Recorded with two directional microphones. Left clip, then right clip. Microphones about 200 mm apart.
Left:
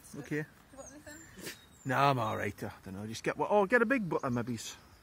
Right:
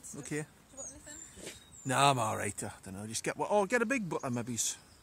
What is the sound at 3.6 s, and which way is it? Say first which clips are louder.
Speech: left 4 dB; 5° right (ahead or behind).